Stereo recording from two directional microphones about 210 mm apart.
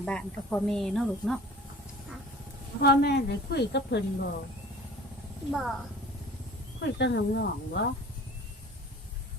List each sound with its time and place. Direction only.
0.0 s a woman's voice: 5° left (ahead or behind)
2.8 s a woman's voice: 50° left (ahead or behind)
5.5 s a woman's voice: centre (ahead or behind)
6.8 s a woman's voice: 55° left (ahead or behind)